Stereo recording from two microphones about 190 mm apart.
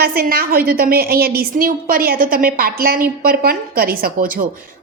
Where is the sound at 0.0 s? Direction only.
50° right (ahead or behind).